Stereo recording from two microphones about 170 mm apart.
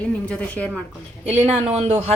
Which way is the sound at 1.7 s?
40° right (ahead or behind).